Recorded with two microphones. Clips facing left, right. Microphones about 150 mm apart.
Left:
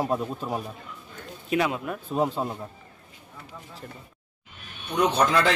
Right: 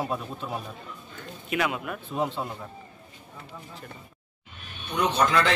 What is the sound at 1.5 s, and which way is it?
Speech, 30° left (ahead or behind).